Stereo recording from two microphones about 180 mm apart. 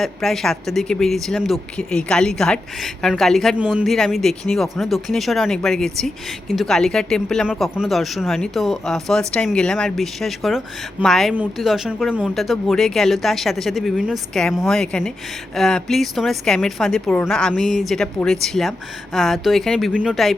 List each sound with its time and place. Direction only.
0.0 s speech: centre (ahead or behind)